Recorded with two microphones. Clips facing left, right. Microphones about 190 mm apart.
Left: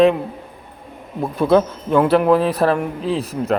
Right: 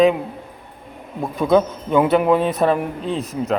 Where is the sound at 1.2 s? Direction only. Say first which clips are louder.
Left 1 dB; centre (ahead or behind).